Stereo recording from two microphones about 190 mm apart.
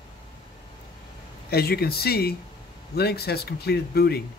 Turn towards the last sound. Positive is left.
turn(degrees=55)  # may be behind; listen again after turning